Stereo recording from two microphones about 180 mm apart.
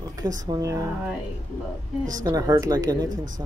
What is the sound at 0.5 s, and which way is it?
Speech, 20° right (ahead or behind).